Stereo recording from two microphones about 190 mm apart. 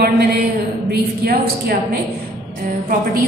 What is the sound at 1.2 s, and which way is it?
Speech, 55° right (ahead or behind).